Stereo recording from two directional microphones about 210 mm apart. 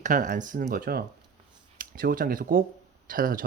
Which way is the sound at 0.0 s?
40° right (ahead or behind).